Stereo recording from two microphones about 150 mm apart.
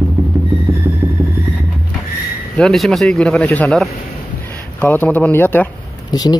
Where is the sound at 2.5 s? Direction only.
Centre (ahead or behind).